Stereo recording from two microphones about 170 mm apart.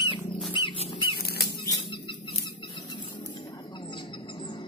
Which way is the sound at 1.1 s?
70° left (ahead or behind).